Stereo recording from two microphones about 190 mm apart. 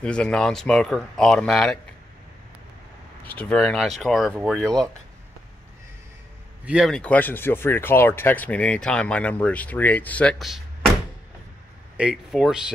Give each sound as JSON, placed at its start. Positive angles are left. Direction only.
{"t": 0.0, "sound": "speech", "side_deg": 5}
{"t": 3.3, "sound": "speech", "side_deg": 5}
{"t": 6.6, "sound": "speech", "side_deg": -5}
{"t": 12.0, "sound": "speech", "side_deg": 0}